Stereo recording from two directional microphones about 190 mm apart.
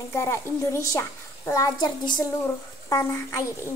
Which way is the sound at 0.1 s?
15° left (ahead or behind).